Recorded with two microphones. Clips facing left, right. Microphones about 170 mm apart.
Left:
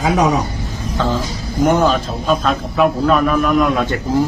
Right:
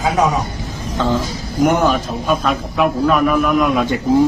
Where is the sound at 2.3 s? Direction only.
Centre (ahead or behind).